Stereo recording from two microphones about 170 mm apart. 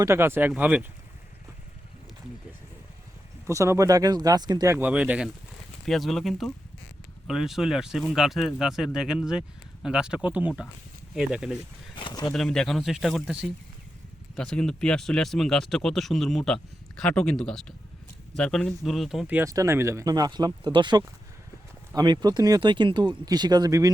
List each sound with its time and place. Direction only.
0.0 s speech: 15° right (ahead or behind)
3.4 s speech: 15° right (ahead or behind)
11.9 s speech: 25° left (ahead or behind)
12.3 s speech: 5° left (ahead or behind)
19.5 s speech: 20° right (ahead or behind)